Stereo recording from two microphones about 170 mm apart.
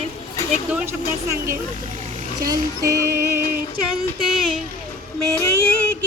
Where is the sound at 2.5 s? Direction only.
20° right (ahead or behind).